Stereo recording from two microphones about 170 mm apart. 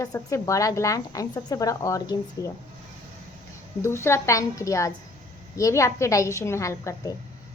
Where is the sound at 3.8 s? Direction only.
15° left (ahead or behind).